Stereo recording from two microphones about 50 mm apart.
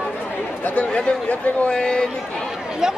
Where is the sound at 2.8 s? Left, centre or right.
Centre.